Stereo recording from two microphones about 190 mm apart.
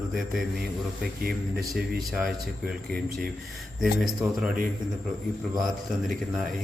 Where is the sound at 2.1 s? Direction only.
5° right (ahead or behind).